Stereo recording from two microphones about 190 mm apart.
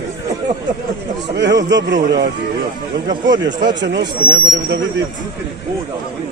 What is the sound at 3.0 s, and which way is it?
Speech, 70° right (ahead or behind).